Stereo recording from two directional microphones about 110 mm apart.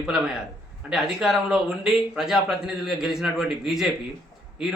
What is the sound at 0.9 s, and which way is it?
A man's voice, 5° right (ahead or behind).